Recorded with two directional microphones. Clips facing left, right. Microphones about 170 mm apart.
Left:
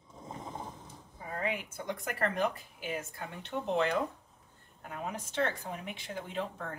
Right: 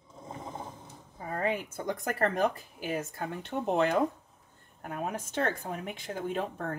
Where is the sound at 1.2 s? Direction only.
40° right (ahead or behind).